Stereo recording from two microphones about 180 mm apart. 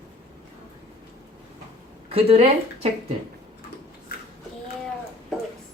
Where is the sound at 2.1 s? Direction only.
35° right (ahead or behind).